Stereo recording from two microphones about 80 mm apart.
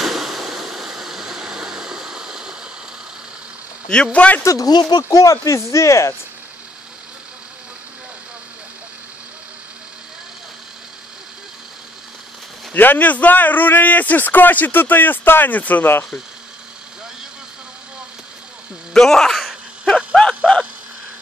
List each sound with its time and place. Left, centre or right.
0.0 s a sound: centre
3.9 s a man's voice: centre
4.4 s speech: left
5.0 s speech: left
12.7 s a man's voice: left
18.9 s a sound: centre